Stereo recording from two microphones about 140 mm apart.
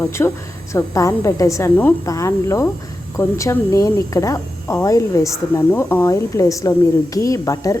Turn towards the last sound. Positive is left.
turn(degrees=25)  # may be behind; listen again after turning